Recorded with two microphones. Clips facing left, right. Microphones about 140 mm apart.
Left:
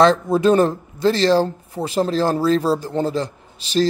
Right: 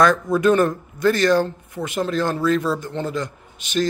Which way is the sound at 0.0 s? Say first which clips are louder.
Left 2 dB; 30° left (ahead or behind).